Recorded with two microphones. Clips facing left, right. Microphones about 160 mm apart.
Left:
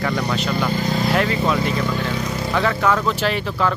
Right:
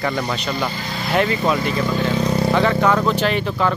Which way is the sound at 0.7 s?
45° left (ahead or behind).